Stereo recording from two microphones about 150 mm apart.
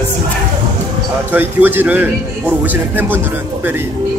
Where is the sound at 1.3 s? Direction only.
15° right (ahead or behind).